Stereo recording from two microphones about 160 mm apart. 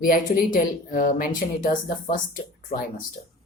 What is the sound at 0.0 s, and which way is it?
Speech, 60° left (ahead or behind).